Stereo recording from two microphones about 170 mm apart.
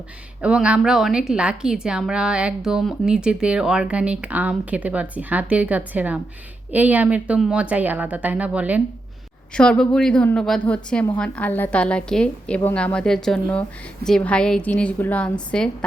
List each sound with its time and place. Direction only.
0.4 s a woman's voice: 5° right (ahead or behind)
9.6 s a woman's voice: 5° left (ahead or behind)